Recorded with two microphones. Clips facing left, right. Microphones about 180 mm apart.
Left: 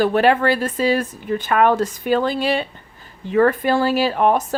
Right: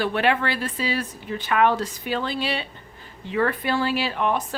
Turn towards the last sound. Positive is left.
turn(degrees=45)  # may be behind; listen again after turning